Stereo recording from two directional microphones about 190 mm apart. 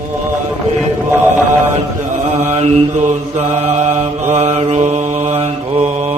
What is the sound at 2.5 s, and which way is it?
Mantra, 35° right (ahead or behind).